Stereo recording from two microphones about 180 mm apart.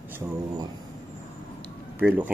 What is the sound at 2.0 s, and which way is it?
Speech, 10° right (ahead or behind).